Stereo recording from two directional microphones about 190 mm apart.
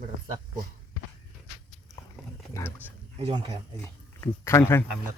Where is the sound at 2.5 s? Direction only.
15° left (ahead or behind).